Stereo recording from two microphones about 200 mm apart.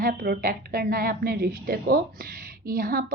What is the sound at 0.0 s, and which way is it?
A woman's voice, 50° right (ahead or behind).